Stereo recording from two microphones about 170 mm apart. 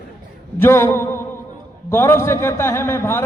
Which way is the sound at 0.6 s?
15° left (ahead or behind).